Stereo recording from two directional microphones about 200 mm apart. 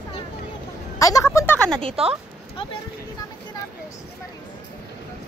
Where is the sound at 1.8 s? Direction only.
30° right (ahead or behind).